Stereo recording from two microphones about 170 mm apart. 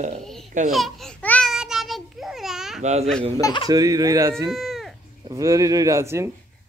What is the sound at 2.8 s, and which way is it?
Speech, 40° right (ahead or behind).